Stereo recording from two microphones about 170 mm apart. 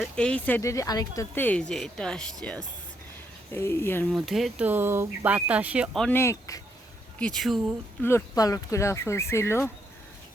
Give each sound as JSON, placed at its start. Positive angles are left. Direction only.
{"t": 0.0, "sound": "speech", "side_deg": 5}
{"t": 4.1, "sound": "speech", "side_deg": 0}
{"t": 6.1, "sound": "speech", "side_deg": 15}
{"t": 7.2, "sound": "speech", "side_deg": 5}
{"t": 8.0, "sound": "speech", "side_deg": 15}